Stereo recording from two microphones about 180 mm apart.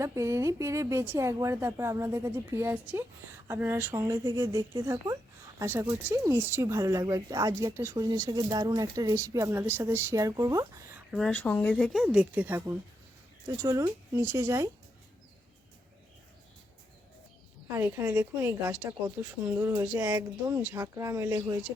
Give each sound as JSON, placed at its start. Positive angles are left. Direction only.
{"t": 0.0, "sound": "speech", "side_deg": -15}
{"t": 11.1, "sound": "speech", "side_deg": 0}
{"t": 11.7, "sound": "a woman's voice", "side_deg": 0}
{"t": 17.7, "sound": "speech", "side_deg": -15}